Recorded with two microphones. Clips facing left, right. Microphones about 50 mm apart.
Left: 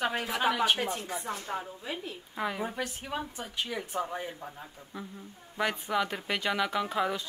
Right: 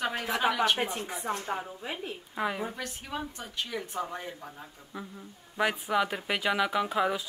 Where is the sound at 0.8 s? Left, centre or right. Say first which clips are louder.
Right 1 dB; right.